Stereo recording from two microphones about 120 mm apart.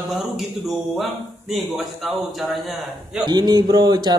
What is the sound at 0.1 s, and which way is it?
Speech, centre (ahead or behind).